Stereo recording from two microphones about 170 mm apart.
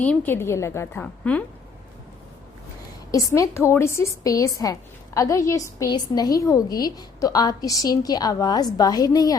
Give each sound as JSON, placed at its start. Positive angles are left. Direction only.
{"t": 0.0, "sound": "a woman's voice", "side_deg": 10}
{"t": 3.1, "sound": "a woman's voice", "side_deg": 20}